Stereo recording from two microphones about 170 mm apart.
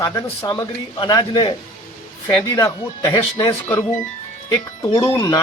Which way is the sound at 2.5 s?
20° left (ahead or behind).